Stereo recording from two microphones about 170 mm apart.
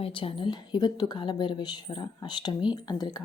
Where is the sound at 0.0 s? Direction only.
30° left (ahead or behind).